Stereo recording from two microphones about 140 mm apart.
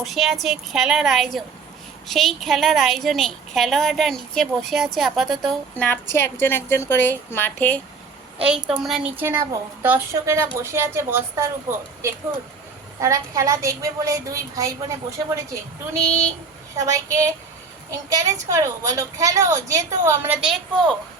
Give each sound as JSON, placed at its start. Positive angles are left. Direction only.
{"t": 0.0, "sound": "a woman's voice", "side_deg": 0}
{"t": 5.8, "sound": "a woman's voice", "side_deg": 15}
{"t": 8.4, "sound": "a woman's voice", "side_deg": -10}
{"t": 9.1, "sound": "a woman's voice", "side_deg": -15}
{"t": 13.0, "sound": "a woman's voice", "side_deg": -25}
{"t": 20.4, "sound": "a woman's voice", "side_deg": 0}